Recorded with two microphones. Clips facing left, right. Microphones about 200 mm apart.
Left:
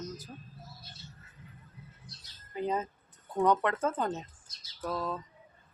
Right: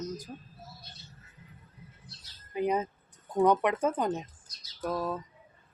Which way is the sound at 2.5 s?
15° right (ahead or behind).